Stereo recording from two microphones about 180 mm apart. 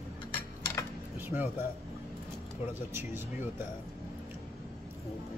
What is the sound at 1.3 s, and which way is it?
Speech, 10° right (ahead or behind).